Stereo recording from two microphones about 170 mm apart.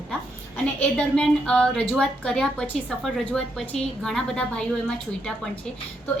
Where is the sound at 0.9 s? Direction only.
5° left (ahead or behind).